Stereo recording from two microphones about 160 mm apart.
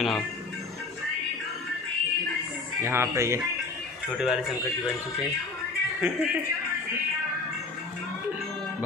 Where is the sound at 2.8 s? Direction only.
15° right (ahead or behind).